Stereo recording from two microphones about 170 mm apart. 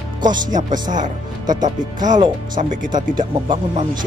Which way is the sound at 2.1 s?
25° right (ahead or behind).